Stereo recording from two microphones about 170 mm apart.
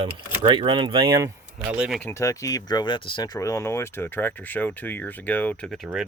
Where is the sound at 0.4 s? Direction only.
30° right (ahead or behind).